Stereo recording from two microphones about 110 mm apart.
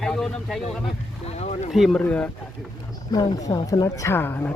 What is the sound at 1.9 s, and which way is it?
Speech, 10° left (ahead or behind).